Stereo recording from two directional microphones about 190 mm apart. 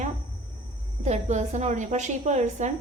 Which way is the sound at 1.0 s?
35° right (ahead or behind).